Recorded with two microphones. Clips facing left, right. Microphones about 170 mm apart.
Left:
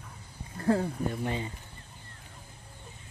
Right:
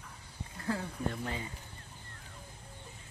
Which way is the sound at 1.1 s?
20° left (ahead or behind).